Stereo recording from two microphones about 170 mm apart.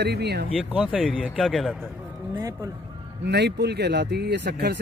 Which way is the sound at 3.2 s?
80° right.